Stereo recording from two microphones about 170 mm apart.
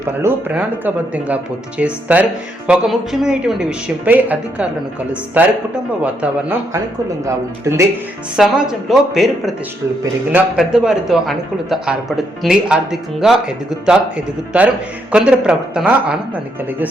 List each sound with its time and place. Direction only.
0.1 s a man's voice: 15° right (ahead or behind)
8.4 s a man's voice: 5° right (ahead or behind)
10.6 s a man's voice: 5° right (ahead or behind)
15.1 s a man's voice: 5° right (ahead or behind)